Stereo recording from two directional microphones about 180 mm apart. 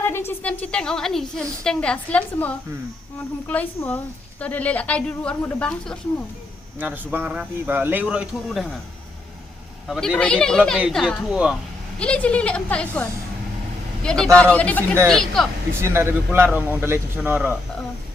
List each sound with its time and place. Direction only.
0.0 s a woman's voice: 15° left (ahead or behind)
6.7 s speech: 10° right (ahead or behind)
9.8 s a woman's voice: centre (ahead or behind)
11.9 s a woman's voice: 5° left (ahead or behind)
15.7 s speech: 15° right (ahead or behind)